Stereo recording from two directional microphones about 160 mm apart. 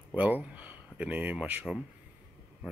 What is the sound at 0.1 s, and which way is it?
Speech, 10° right (ahead or behind).